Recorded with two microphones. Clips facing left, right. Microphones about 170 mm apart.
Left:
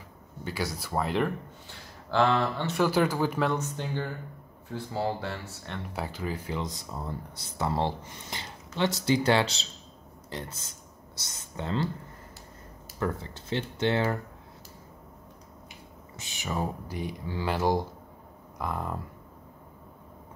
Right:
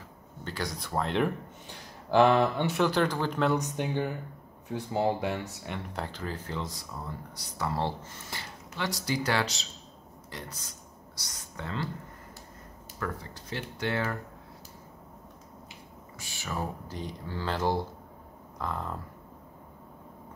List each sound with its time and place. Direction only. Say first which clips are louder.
0.4 s speech: left 2 dB; 10° left (ahead or behind)
2.0 s speech: right 3 dB; 15° right (ahead or behind)
2.7 s speech: left 1 dB; 5° left (ahead or behind)
3.5 s speech: right 2 dB; 15° right (ahead or behind)
5.8 s speech: left 4 dB; 10° left (ahead or behind); by 11.9 s 25° left (ahead or behind)
13.0 s speech: left 5 dB; 25° left (ahead or behind)
16.2 s speech: left 3 dB; 20° left (ahead or behind)